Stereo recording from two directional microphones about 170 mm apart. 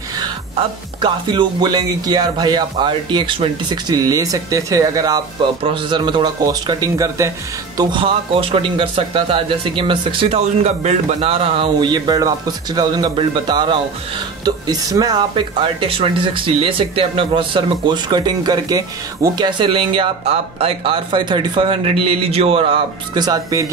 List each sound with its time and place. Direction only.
0.6 s speech: 30° right (ahead or behind)